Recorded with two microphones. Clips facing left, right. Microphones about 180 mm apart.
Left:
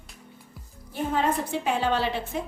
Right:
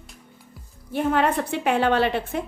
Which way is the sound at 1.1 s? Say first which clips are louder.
Right 1 dB; 65° right (ahead or behind).